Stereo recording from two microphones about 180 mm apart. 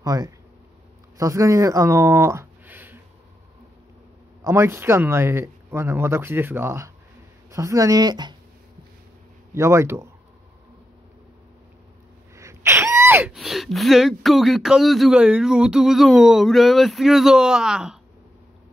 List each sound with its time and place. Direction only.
0.0 s speech: 20° right (ahead or behind)
4.4 s speech: 15° right (ahead or behind)
9.5 s speech: 15° right (ahead or behind)
12.4 s speech: 15° right (ahead or behind)